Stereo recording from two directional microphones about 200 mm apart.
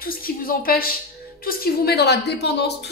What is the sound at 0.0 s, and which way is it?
A woman's voice, 45° left (ahead or behind).